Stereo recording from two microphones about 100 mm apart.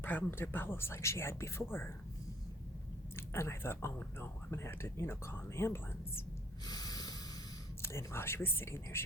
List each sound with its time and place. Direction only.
0.0 s speech: 20° left (ahead or behind)
3.2 s speech: 25° left (ahead or behind)
6.7 s snort: 40° left (ahead or behind)
7.8 s speech: 25° left (ahead or behind)